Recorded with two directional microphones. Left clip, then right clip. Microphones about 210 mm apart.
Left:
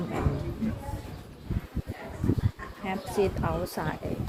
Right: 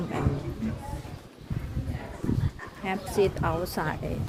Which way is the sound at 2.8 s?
20° right (ahead or behind).